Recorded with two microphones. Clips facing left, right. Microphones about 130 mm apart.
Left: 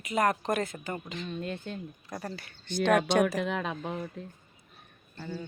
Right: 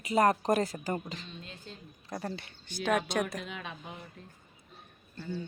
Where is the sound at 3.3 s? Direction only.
80° left.